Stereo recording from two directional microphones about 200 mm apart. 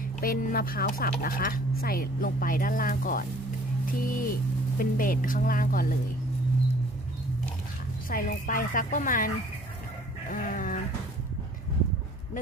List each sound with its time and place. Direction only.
0.0 s speech: 45° left (ahead or behind)
8.1 s speech: 45° left (ahead or behind)
10.2 s chicken: 40° left (ahead or behind)